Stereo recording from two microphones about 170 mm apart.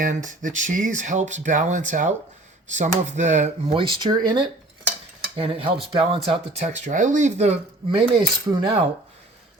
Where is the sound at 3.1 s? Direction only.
45° right (ahead or behind).